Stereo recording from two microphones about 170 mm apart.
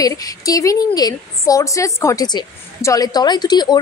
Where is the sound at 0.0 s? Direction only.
20° left (ahead or behind).